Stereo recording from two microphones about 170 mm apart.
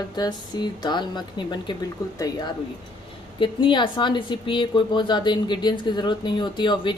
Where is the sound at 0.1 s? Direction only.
25° left (ahead or behind).